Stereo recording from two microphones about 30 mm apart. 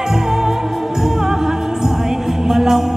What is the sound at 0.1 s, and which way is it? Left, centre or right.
Music, centre.